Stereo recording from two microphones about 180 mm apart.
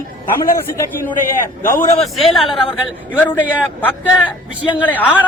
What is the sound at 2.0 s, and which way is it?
A man's voice, centre (ahead or behind).